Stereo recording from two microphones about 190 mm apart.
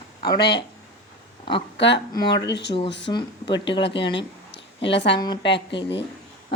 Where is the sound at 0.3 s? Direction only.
60° left (ahead or behind).